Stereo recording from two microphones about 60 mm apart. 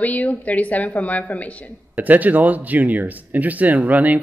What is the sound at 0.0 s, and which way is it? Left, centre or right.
A woman's voice, left.